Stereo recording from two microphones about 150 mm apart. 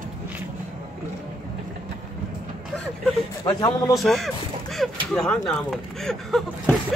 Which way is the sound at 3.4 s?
25° left (ahead or behind).